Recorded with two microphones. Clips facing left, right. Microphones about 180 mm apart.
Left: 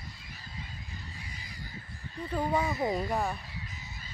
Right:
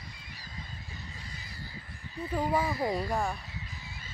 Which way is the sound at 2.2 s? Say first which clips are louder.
Even; 5° right (ahead or behind).